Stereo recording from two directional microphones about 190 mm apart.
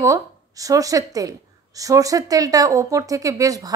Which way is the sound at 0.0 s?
15° right (ahead or behind).